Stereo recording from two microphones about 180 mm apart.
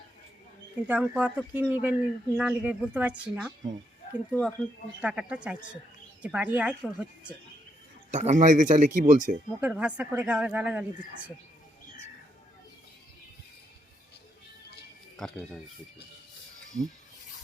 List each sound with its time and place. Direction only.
0.9 s speech: 5° right (ahead or behind)
4.3 s speech: 5° left (ahead or behind)
4.9 s speech: 5° right (ahead or behind)
8.1 s speech: 40° right (ahead or behind)
9.6 s speech: 5° right (ahead or behind)
15.1 s speech: 5° left (ahead or behind)